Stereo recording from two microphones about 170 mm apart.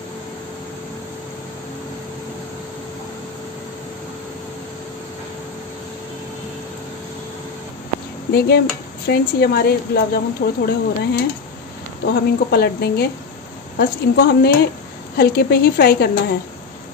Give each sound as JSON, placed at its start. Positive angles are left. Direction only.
{"t": 8.3, "sound": "speech", "side_deg": 75}